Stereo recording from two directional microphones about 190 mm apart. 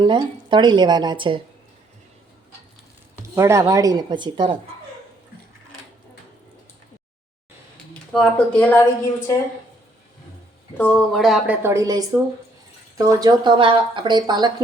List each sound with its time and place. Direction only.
0.0 s speech: 25° right (ahead or behind)
3.3 s speech: 15° right (ahead or behind)
8.1 s speech: 5° left (ahead or behind)
10.8 s a woman's voice: 5° left (ahead or behind); by 14.5 s 20° right (ahead or behind)